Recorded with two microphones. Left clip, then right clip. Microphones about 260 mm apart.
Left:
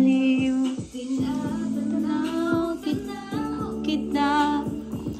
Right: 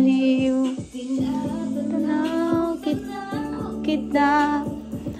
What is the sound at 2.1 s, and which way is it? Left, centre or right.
Music, centre.